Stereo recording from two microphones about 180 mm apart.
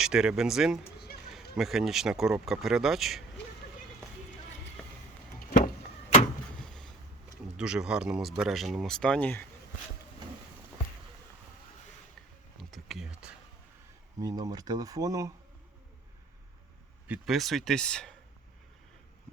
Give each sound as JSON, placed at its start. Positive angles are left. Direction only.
{"t": 0.0, "sound": "speech", "side_deg": -5}
{"t": 5.4, "sound": "vehicle", "side_deg": 50}
{"t": 6.6, "sound": "boat", "side_deg": 0}
{"t": 7.4, "sound": "speech", "side_deg": -5}
{"t": 12.5, "sound": "a sound", "side_deg": 0}
{"t": 14.2, "sound": "speech", "side_deg": -20}
{"t": 17.1, "sound": "speech", "side_deg": 0}